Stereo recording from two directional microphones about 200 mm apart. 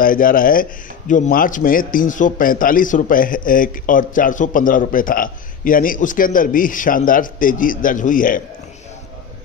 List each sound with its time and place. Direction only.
0.0 s speech: 45° left (ahead or behind)